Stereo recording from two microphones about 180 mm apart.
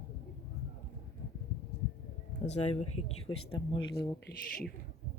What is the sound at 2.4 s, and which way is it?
Speech, 40° left (ahead or behind).